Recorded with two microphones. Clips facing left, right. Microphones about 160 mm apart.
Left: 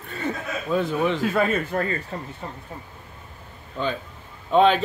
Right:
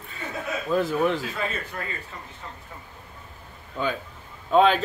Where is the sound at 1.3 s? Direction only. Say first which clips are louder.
Left 9 dB; 55° left (ahead or behind).